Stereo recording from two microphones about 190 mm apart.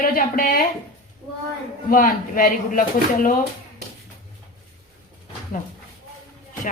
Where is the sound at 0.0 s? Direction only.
50° left (ahead or behind).